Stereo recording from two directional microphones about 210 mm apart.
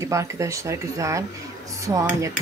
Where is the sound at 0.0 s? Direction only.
15° right (ahead or behind).